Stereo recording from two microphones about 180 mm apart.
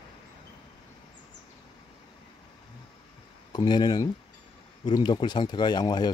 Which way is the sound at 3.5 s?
25° left (ahead or behind).